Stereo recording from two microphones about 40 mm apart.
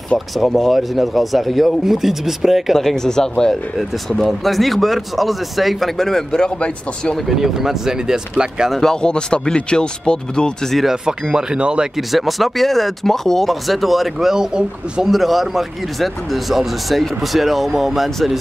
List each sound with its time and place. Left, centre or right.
0.3 s speech: centre
3.0 s speech: centre
4.2 s speech: centre
5.9 s speech: centre
7.2 s speech: centre
8.7 s speech: centre
10.9 s speech: centre
12.1 s speech: centre
14.3 s speech: centre
15.0 s speech: centre